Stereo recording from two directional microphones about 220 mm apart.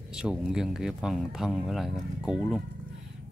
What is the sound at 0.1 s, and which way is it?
Speech, 5° right (ahead or behind).